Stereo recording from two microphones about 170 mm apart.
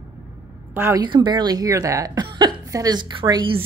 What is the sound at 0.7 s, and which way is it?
Speech, 15° right (ahead or behind).